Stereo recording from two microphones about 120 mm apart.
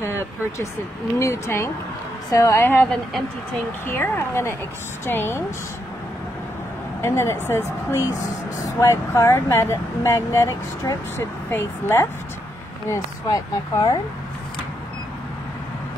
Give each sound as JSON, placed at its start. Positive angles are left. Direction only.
{"t": 0.0, "sound": "speech", "side_deg": 25}
{"t": 7.0, "sound": "speech", "side_deg": 20}